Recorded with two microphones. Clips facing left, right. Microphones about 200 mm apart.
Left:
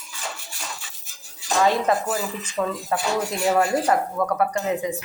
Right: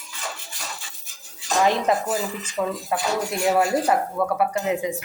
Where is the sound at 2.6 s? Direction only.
5° right (ahead or behind).